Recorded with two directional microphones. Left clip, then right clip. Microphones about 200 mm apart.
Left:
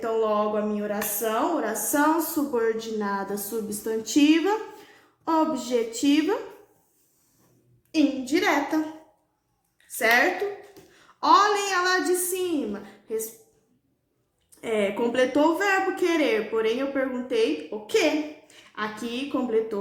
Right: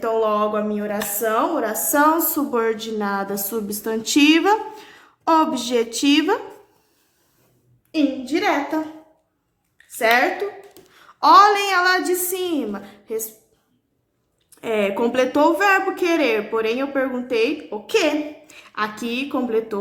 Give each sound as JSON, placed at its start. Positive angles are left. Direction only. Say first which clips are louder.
{"t": 0.0, "sound": "a woman's voice", "louder": "right 5 dB", "side_deg": -30}
{"t": 7.9, "sound": "a woman's voice", "louder": "right 2 dB", "side_deg": -15}
{"t": 10.0, "sound": "a woman's voice", "louder": "right 4 dB", "side_deg": -15}
{"t": 14.6, "sound": "a woman's voice", "louder": "right 5 dB", "side_deg": -25}